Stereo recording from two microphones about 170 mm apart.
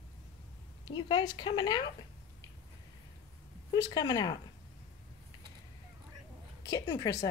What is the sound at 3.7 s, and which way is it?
Speech, 25° left (ahead or behind).